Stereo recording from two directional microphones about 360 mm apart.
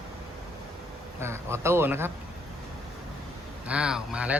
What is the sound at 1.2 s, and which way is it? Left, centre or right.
Speech, centre.